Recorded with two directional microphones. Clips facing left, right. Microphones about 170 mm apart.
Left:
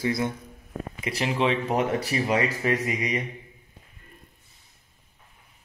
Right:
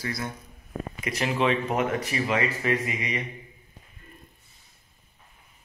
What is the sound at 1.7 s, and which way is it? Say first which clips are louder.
Speech: left 2 dB; 35° left (ahead or behind).